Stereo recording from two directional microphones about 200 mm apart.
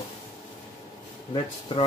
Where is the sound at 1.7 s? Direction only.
25° left (ahead or behind).